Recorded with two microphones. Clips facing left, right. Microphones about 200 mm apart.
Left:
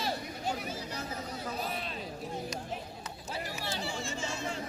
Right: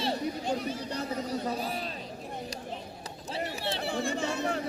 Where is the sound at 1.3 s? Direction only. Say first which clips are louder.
Right 5 dB; 35° right (ahead or behind).